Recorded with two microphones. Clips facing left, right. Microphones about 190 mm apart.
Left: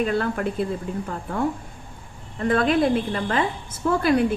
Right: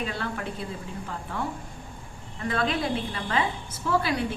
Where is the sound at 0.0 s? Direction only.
50° left (ahead or behind).